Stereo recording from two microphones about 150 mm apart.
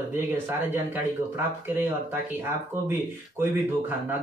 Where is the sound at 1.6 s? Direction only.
15° right (ahead or behind).